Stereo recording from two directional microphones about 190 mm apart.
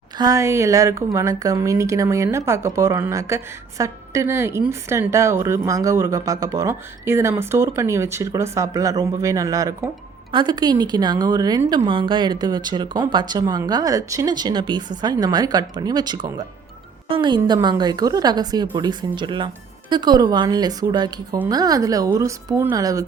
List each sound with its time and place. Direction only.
0.2 s a woman's voice: 15° right (ahead or behind)